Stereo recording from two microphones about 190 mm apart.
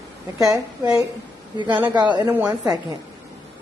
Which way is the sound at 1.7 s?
10° right (ahead or behind).